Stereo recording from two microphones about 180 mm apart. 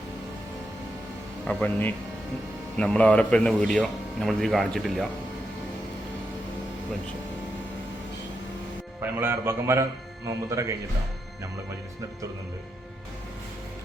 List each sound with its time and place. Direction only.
1.5 s speech: 10° left (ahead or behind)
9.0 s a man's voice: 10° right (ahead or behind)